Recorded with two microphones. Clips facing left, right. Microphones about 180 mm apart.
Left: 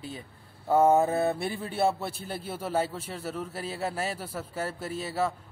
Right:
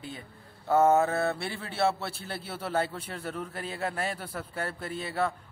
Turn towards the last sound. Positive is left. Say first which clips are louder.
# left 1 dB
turn(degrees=5)  # may be behind; listen again after turning